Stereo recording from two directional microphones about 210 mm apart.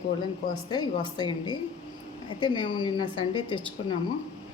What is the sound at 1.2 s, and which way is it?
A woman's voice, 20° left (ahead or behind).